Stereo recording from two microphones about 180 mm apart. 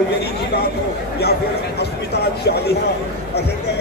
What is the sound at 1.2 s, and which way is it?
Speech, 65° left (ahead or behind).